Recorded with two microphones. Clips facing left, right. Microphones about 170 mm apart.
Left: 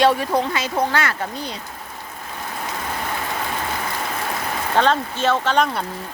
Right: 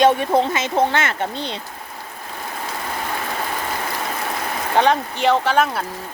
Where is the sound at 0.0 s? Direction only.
20° right (ahead or behind).